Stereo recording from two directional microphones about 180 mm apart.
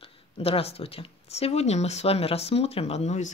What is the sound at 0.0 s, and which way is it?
Speech, 35° left (ahead or behind).